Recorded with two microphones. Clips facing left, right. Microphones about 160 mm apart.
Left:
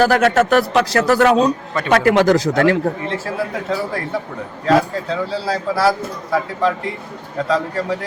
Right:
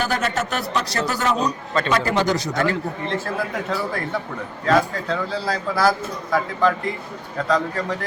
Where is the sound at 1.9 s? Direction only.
80° left.